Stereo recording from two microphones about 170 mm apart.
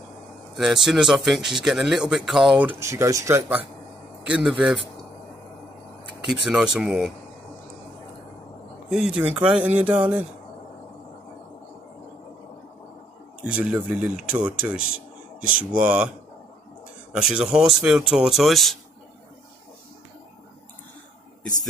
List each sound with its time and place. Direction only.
0.8 s speech: 5° right (ahead or behind)
2.6 s speech: 15° right (ahead or behind)
6.2 s speech: 5° right (ahead or behind)
8.9 s speech: 5° right (ahead or behind)
13.5 s speech: 5° right (ahead or behind)
17.1 s speech: 5° right (ahead or behind)